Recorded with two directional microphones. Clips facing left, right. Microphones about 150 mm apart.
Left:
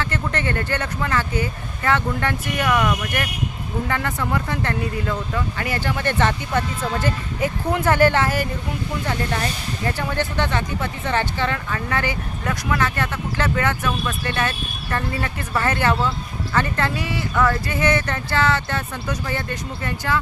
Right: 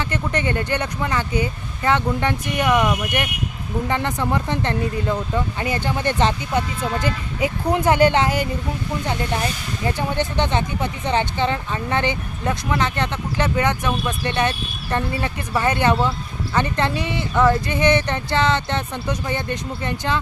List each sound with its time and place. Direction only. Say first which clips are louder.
0.0 s speech: right 1 dB; 15° right (ahead or behind)